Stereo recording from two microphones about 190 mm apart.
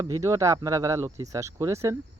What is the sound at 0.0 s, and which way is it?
Speech, 15° right (ahead or behind).